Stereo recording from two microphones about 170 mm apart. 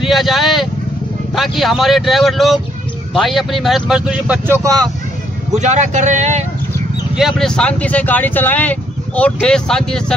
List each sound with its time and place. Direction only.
0.0 s vehicle: centre (ahead or behind)
1.3 s speech: centre (ahead or behind)
5.5 s speech: 45° right (ahead or behind)
7.2 s speech: centre (ahead or behind)